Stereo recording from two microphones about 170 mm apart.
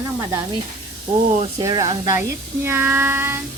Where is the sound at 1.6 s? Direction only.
25° right (ahead or behind).